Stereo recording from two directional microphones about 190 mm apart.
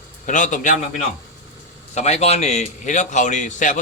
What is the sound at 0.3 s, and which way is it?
Speech, 40° left (ahead or behind).